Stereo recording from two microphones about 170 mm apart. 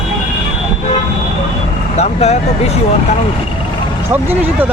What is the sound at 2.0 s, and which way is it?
Speech, 40° left (ahead or behind).